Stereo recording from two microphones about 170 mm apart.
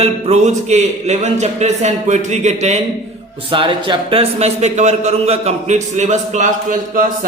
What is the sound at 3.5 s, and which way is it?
A man's voice, 30° right (ahead or behind).